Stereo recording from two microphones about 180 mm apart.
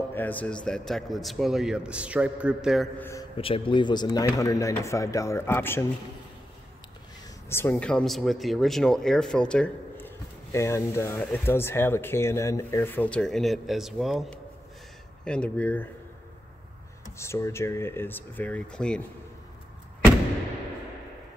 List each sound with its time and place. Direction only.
0.1 s a man's voice: 10° left (ahead or behind)
3.0 s speech: 15° left (ahead or behind)
3.3 s speech: 30° left (ahead or behind); by 5.9 s 15° left (ahead or behind)
7.4 s speech: 10° left (ahead or behind)
17.2 s speech: 15° left (ahead or behind)